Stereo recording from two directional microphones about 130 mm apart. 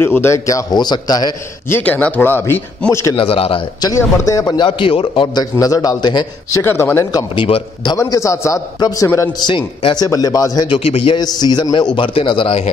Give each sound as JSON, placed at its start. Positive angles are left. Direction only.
{"t": 0.0, "sound": "a man's voice", "side_deg": 20}
{"t": 1.7, "sound": "speech", "side_deg": 15}
{"t": 3.2, "sound": "a man's voice", "side_deg": 45}
{"t": 3.8, "sound": "a man's voice", "side_deg": 25}
{"t": 6.6, "sound": "a man's voice", "side_deg": 20}
{"t": 7.4, "sound": "a man's voice", "side_deg": 45}
{"t": 7.9, "sound": "a man's voice", "side_deg": 25}
{"t": 9.5, "sound": "a man's voice", "side_deg": 45}
{"t": 9.9, "sound": "a man's voice", "side_deg": 30}
{"t": 10.7, "sound": "a man's voice", "side_deg": 50}
{"t": 11.1, "sound": "a man's voice", "side_deg": 30}